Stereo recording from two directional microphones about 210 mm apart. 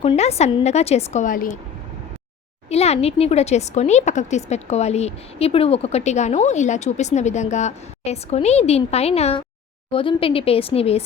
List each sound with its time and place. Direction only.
0.0 s speech: 30° left (ahead or behind)
2.6 s speech: 30° left (ahead or behind)